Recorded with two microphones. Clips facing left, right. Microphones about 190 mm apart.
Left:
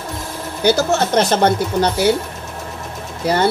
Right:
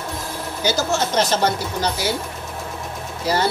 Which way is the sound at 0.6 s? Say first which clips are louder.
Left 6 dB; 60° left (ahead or behind).